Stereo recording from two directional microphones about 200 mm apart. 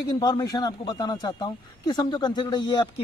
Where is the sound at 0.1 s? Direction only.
20° left (ahead or behind).